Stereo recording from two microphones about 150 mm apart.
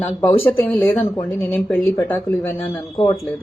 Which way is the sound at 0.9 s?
20° left (ahead or behind).